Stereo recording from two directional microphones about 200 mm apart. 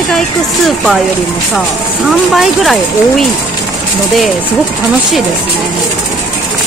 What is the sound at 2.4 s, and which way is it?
Speech, centre (ahead or behind).